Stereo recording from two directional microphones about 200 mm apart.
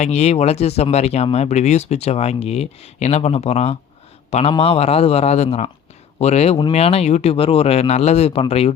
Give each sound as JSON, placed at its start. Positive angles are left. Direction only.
{"t": 0.0, "sound": "speech", "side_deg": 35}